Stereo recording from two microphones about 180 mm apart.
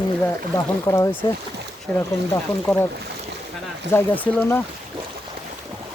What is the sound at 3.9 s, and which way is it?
Speech, 10° left (ahead or behind).